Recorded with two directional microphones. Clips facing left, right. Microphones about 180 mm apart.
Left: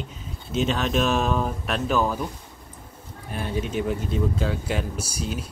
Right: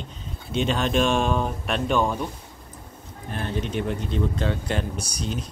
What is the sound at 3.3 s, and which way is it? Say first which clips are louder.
Speech: left 1 dB; 10° left (ahead or behind).